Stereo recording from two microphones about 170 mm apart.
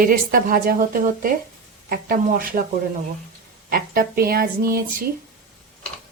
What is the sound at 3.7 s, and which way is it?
A woman's voice, 60° right (ahead or behind).